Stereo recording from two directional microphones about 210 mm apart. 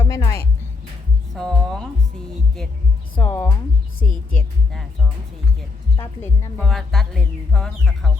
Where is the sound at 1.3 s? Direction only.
Centre (ahead or behind).